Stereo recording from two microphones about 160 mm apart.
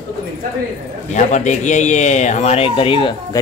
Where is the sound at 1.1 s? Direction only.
50° left (ahead or behind).